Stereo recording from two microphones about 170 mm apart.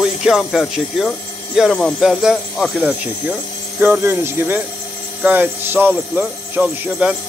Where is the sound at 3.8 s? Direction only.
10° right (ahead or behind).